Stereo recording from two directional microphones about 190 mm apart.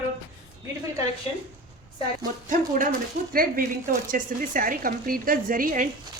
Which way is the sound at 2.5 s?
45° right (ahead or behind).